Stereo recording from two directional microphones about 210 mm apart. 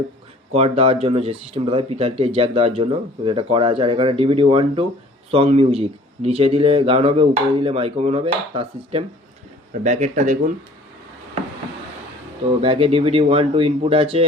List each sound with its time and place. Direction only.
0.5 s speech: 30° right (ahead or behind)
12.6 s speech: 25° right (ahead or behind)